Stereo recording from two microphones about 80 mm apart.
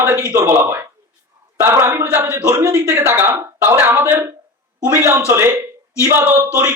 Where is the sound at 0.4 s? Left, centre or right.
Right.